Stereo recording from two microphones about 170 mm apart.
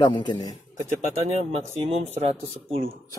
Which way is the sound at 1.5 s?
35° right (ahead or behind).